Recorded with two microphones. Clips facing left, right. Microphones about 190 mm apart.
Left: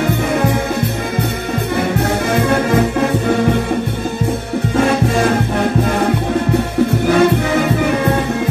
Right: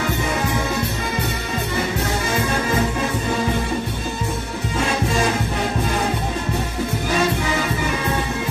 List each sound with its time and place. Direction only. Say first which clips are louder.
1.8 s music: left 7 dB; 60° left (ahead or behind)
4.7 s music: left 7 dB; 60° left (ahead or behind)
7.1 s music: left 6 dB; 60° left (ahead or behind)